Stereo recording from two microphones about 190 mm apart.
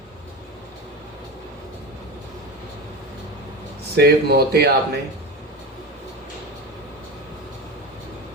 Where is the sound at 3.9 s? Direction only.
55° right (ahead or behind).